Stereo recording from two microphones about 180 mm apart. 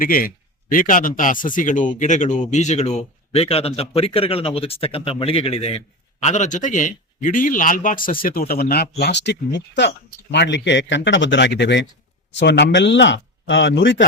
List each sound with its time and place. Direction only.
0.0 s speech: 50° left (ahead or behind); by 14.1 s 80° left